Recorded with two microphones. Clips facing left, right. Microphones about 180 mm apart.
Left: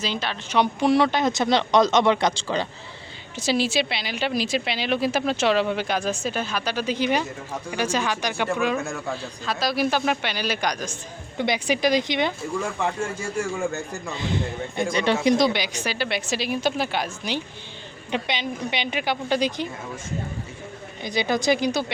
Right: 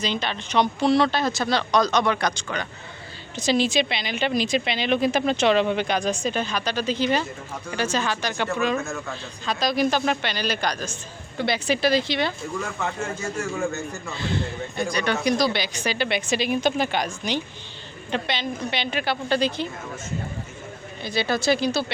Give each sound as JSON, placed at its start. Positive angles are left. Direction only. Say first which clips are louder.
{"t": 0.0, "sound": "speech", "louder": "right 1 dB", "side_deg": 5}
{"t": 3.3, "sound": "a woman's voice", "louder": "right 1 dB", "side_deg": 10}
{"t": 14.1, "sound": "speech", "louder": "left 1 dB", "side_deg": 15}
{"t": 21.0, "sound": "speech", "louder": "left 1 dB", "side_deg": 15}